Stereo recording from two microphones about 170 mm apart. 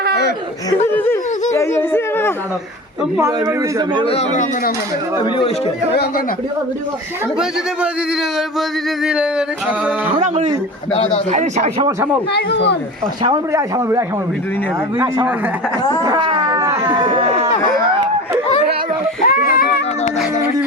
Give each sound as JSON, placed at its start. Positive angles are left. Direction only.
{"t": 0.9, "sound": "a sound", "side_deg": 15}
{"t": 3.2, "sound": "speech", "side_deg": -20}
{"t": 4.0, "sound": "a man's voice", "side_deg": 35}
{"t": 5.1, "sound": "speech", "side_deg": 25}
{"t": 10.1, "sound": "speech", "side_deg": -45}
{"t": 10.9, "sound": "a man's voice", "side_deg": 35}
{"t": 11.3, "sound": "speech", "side_deg": -45}
{"t": 13.2, "sound": "speech", "side_deg": -20}
{"t": 16.0, "sound": "a sound", "side_deg": -30}
{"t": 16.9, "sound": "speech", "side_deg": -30}
{"t": 19.2, "sound": "a sound", "side_deg": 55}